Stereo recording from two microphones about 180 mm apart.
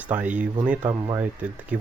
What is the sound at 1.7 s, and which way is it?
Speech, 5° right (ahead or behind).